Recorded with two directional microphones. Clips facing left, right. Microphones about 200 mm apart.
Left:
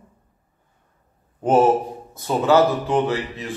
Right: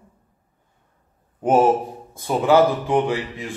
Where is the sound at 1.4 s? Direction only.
10° right (ahead or behind).